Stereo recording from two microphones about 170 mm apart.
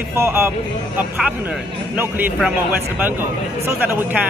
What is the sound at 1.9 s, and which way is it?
Speech, 10° right (ahead or behind).